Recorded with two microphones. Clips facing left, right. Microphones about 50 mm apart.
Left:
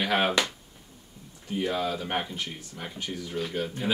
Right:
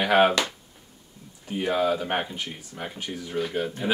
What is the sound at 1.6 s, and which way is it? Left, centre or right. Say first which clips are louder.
Speech: right 5 dB; right.